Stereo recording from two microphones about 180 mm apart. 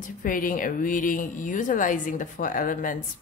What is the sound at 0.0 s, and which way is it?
Speech, 50° left (ahead or behind).